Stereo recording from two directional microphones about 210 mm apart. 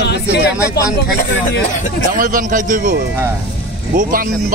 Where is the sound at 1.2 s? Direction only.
35° left (ahead or behind).